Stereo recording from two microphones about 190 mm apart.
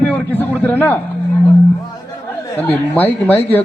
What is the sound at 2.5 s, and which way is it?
A man's voice, 10° left (ahead or behind).